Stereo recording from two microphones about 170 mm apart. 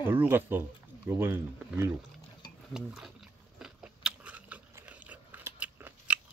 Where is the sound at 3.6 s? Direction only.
5° right (ahead or behind).